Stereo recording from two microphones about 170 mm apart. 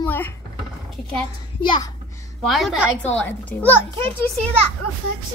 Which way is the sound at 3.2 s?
10° left (ahead or behind).